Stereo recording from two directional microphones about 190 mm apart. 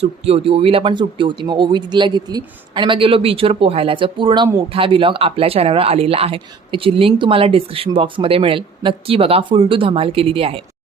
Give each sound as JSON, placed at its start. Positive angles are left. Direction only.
{"t": 0.0, "sound": "speech", "side_deg": -30}